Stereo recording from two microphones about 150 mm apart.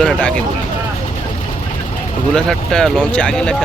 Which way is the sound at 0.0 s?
5° left (ahead or behind).